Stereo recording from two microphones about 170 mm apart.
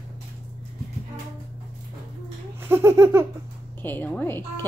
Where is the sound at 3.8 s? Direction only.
10° left (ahead or behind).